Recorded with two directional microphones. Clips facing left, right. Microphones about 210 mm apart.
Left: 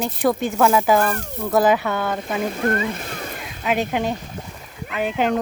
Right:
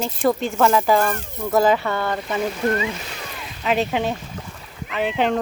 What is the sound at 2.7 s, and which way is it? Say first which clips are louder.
Splash: even; 50° left (ahead or behind).